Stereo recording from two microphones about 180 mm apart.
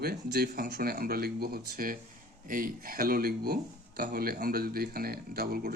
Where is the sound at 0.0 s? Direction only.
60° right (ahead or behind).